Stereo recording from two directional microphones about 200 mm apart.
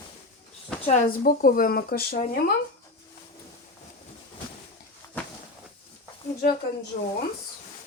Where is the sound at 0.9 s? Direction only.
40° left (ahead or behind).